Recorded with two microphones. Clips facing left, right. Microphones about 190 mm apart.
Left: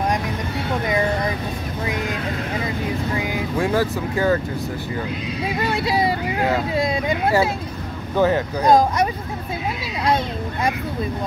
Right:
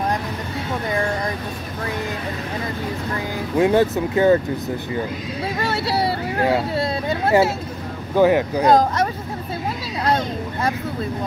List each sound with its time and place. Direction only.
3.5 s speech: 20° right (ahead or behind)
5.6 s speech: 15° left (ahead or behind)
8.2 s speech: 15° right (ahead or behind)
8.6 s speech: 10° left (ahead or behind)